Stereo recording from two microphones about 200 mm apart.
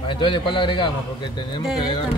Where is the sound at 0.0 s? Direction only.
25° left (ahead or behind).